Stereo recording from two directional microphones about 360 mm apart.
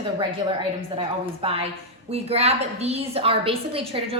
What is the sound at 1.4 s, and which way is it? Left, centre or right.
A woman's voice, centre.